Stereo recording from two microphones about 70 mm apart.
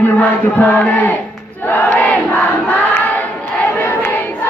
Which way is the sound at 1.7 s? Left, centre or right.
Left.